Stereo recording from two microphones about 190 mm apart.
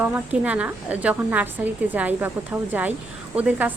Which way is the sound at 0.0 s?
10° right (ahead or behind).